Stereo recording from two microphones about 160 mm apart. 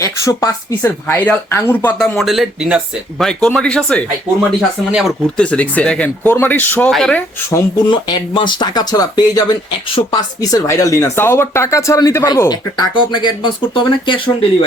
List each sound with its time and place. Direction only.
0.0 s speech: 20° left (ahead or behind)
4.9 s speech: 5° right (ahead or behind)
5.4 s speech: 10° left (ahead or behind)
7.9 s speech: 30° left (ahead or behind)